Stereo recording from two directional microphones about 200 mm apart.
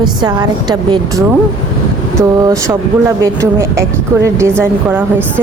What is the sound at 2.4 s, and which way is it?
Speech, 15° right (ahead or behind).